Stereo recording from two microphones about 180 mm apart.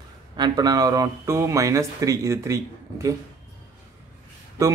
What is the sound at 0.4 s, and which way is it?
Speech, 20° right (ahead or behind).